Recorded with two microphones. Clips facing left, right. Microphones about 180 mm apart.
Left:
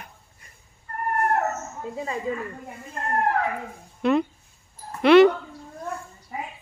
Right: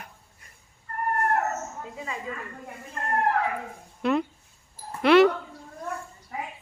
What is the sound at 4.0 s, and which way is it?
A woman's voice, centre (ahead or behind).